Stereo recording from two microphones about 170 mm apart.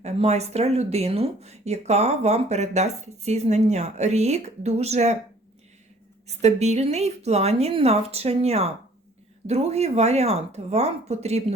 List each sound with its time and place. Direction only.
0.0 s speech: 40° right (ahead or behind)
6.2 s speech: 40° right (ahead or behind)